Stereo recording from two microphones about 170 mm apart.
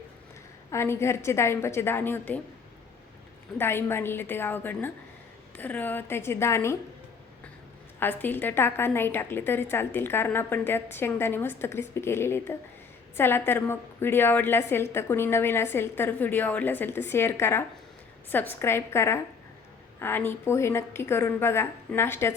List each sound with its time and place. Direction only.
0.7 s a woman's voice: 15° left (ahead or behind)
3.6 s a woman's voice: 15° left (ahead or behind)
7.9 s a woman's voice: 10° left (ahead or behind)